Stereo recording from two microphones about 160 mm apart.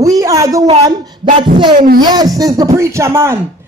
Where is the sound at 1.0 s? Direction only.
30° right (ahead or behind).